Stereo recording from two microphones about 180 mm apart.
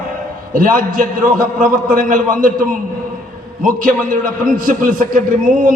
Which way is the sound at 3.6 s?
50° right (ahead or behind).